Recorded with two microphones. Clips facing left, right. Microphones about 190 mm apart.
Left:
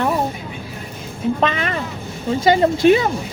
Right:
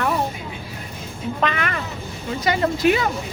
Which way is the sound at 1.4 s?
25° left (ahead or behind).